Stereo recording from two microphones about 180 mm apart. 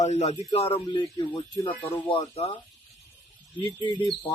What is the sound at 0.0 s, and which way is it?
Speech, 40° left (ahead or behind).